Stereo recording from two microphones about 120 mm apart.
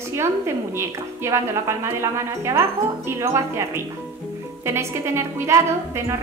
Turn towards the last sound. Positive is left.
turn(degrees=-25)  # may be behind; listen again after turning